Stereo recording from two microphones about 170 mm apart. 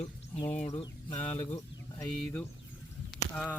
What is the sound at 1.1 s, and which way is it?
Speech, 40° left (ahead or behind).